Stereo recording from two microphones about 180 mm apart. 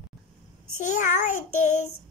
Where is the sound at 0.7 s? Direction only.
45° left (ahead or behind).